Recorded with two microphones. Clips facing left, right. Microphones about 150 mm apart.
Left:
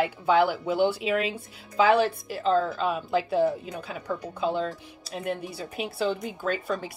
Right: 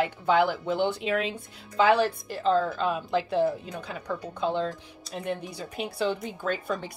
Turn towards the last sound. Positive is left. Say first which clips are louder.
# left 1 dB
turn(degrees=5)  # may be behind; listen again after turning